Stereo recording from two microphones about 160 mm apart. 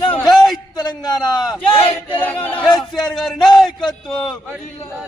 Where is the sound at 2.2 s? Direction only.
10° left (ahead or behind).